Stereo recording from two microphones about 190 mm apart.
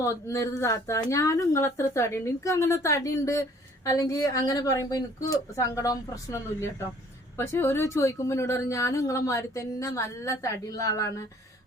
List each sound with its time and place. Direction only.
0.0 s a woman's voice: 15° left (ahead or behind)